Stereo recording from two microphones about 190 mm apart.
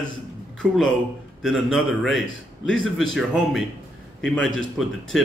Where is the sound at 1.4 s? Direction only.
Centre (ahead or behind).